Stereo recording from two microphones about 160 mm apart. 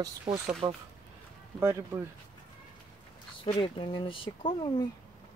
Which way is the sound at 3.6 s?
30° left (ahead or behind).